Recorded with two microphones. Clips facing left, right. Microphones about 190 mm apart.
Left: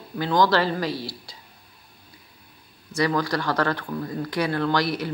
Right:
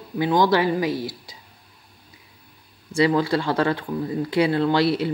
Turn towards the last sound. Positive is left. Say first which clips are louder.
# right 4 dB
turn(degrees=-25)  # may be behind; listen again after turning